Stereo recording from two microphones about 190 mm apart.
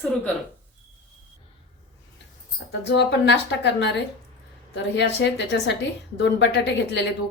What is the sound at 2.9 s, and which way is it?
A woman's voice, 65° left (ahead or behind).